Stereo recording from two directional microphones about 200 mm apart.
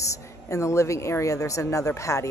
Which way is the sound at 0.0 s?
15° left (ahead or behind).